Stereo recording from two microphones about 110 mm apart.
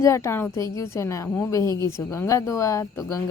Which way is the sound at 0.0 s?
25° left (ahead or behind).